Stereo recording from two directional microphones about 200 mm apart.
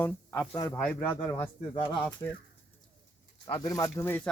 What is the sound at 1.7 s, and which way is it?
Speech, 25° left (ahead or behind).